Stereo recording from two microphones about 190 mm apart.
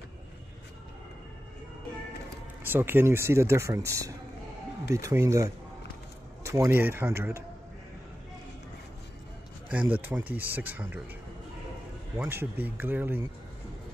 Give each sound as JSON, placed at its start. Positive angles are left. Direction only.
{"t": 2.6, "sound": "speech", "side_deg": -10}
{"t": 9.7, "sound": "speech", "side_deg": -10}
{"t": 12.2, "sound": "speech", "side_deg": -10}